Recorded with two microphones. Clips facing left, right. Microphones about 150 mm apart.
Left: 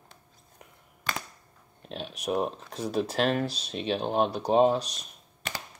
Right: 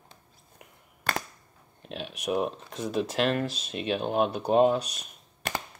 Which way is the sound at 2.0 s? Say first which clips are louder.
Even; 35° left (ahead or behind).